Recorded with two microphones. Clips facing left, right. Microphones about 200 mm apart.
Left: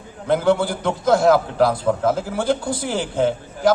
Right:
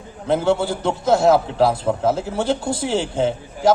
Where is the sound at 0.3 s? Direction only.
25° right (ahead or behind).